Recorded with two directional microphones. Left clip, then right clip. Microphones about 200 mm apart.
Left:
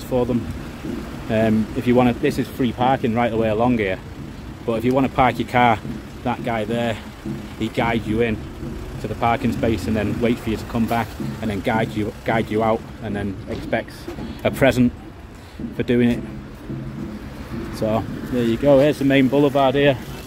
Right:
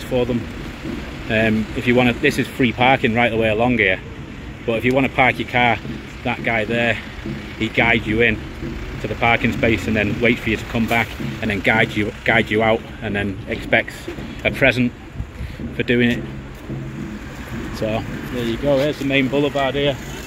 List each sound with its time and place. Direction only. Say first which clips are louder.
0.1 s speech: right 1 dB; 10° left (ahead or behind)
2.6 s speech: right 4 dB; 5° right (ahead or behind)
14.4 s speech: right 1 dB; 15° left (ahead or behind)
17.8 s speech: left 1 dB; 15° left (ahead or behind)
18.4 s speech: left 3 dB; 30° left (ahead or behind)
19.1 s speech: right 1 dB; 20° left (ahead or behind)
19.5 s speech: left 3 dB; 30° left (ahead or behind)